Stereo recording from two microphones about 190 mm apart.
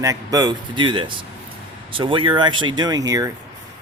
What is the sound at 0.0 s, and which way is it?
Speech, 20° right (ahead or behind).